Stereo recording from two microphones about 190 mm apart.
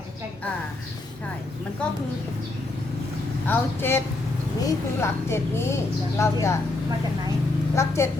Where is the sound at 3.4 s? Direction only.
10° left (ahead or behind).